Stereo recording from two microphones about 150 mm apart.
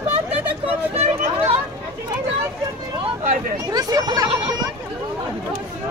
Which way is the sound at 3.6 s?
25° right (ahead or behind).